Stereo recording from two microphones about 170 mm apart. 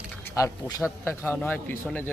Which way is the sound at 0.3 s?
20° left (ahead or behind).